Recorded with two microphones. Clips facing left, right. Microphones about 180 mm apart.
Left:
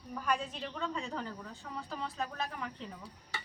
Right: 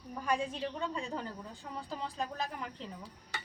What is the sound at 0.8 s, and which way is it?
Speech, 15° right (ahead or behind).